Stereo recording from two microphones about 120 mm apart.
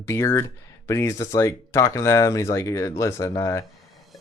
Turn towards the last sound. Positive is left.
turn(degrees=25)  # may be behind; listen again after turning